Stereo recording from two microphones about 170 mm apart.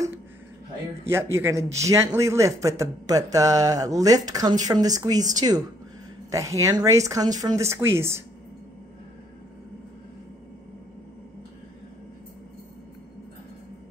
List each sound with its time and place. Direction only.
1.0 s a man's voice: 15° right (ahead or behind)